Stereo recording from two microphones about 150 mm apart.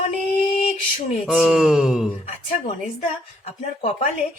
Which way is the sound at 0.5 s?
55° left (ahead or behind).